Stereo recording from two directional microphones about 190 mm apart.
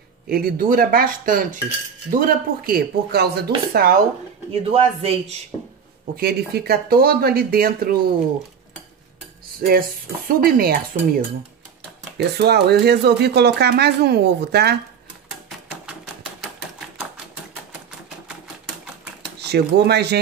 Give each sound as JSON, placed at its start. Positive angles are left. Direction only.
{"t": 0.3, "sound": "speech", "side_deg": -50}
{"t": 4.5, "sound": "a man's voice", "side_deg": -30}
{"t": 6.1, "sound": "speech", "side_deg": -55}
{"t": 9.7, "sound": "speech", "side_deg": -50}
{"t": 15.7, "sound": "typewriter", "side_deg": -5}
{"t": 19.3, "sound": "speech", "side_deg": -60}